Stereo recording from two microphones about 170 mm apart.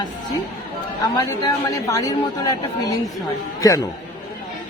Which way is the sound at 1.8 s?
20° left (ahead or behind).